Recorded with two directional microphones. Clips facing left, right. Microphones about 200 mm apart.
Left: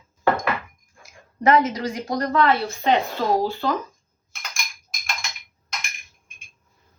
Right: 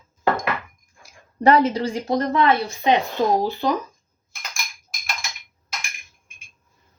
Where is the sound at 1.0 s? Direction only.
30° right (ahead or behind); by 3.7 s 15° right (ahead or behind).